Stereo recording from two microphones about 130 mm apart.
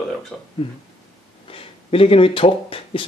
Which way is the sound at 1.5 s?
45° left (ahead or behind).